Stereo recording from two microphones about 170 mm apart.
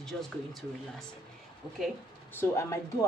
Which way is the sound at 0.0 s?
Centre (ahead or behind).